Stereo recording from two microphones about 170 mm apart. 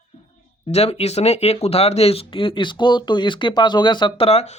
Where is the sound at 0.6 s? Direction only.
35° left (ahead or behind).